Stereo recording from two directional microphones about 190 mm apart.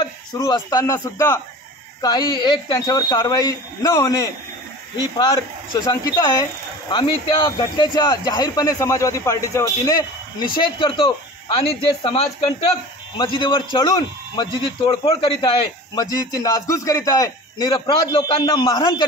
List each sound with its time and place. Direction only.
0.0 s a man's voice: 20° left (ahead or behind)